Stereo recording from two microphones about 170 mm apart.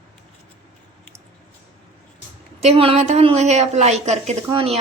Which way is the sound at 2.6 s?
35° right (ahead or behind).